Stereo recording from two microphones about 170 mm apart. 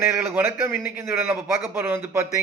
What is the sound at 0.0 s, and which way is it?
A man's voice, 15° right (ahead or behind).